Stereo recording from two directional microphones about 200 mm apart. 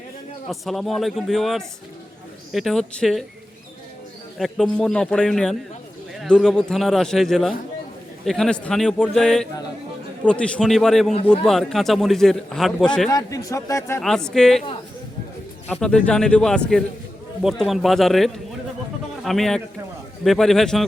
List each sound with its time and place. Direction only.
0.4 s a man's voice: centre (ahead or behind)
4.4 s a man's voice: centre (ahead or behind)
13.1 s a man's voice: 15° left (ahead or behind)
14.0 s a man's voice: 5° left (ahead or behind)
15.6 s a man's voice: 5° left (ahead or behind)